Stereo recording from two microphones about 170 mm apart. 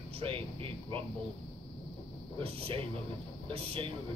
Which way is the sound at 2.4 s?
35° right (ahead or behind).